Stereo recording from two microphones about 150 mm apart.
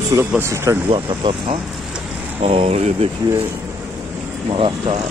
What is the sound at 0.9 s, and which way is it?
Speech, 35° right (ahead or behind).